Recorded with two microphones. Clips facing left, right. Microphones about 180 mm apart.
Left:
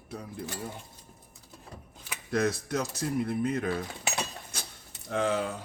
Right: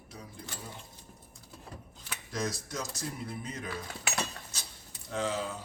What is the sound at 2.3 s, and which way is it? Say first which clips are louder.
Speech: left 8 dB; 60° left (ahead or behind).